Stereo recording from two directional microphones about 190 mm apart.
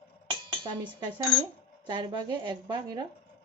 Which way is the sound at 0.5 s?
25° right (ahead or behind).